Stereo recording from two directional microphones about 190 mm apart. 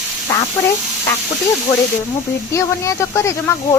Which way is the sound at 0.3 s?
15° left (ahead or behind).